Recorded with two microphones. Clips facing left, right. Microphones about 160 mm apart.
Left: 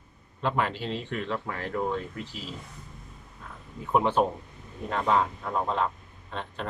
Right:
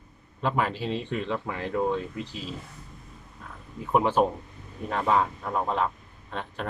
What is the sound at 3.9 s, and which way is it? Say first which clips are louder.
Speech: right 1 dB; 5° right (ahead or behind).